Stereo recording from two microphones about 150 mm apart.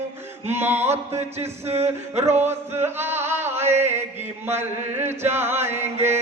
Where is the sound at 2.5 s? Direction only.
15° right (ahead or behind).